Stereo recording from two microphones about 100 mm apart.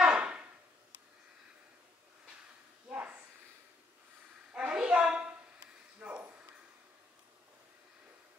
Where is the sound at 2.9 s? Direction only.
15° right (ahead or behind).